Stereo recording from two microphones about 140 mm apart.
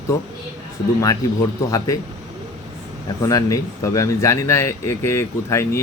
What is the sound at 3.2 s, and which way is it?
Speech, 25° left (ahead or behind).